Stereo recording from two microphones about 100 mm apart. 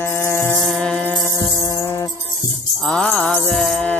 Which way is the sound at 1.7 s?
30° left (ahead or behind).